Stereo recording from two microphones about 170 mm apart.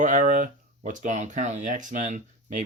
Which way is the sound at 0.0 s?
50° right (ahead or behind).